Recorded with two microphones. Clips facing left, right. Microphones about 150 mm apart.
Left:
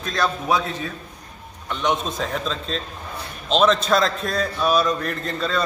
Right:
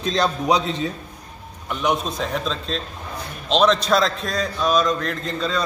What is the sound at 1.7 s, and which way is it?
A man's voice, centre (ahead or behind).